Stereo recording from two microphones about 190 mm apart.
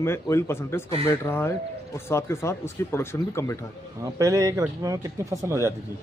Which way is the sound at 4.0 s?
20° right (ahead or behind).